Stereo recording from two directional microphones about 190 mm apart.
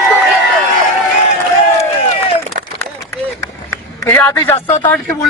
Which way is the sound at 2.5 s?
50° right (ahead or behind).